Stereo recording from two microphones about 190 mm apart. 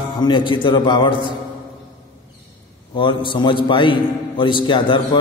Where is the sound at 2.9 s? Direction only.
25° left (ahead or behind).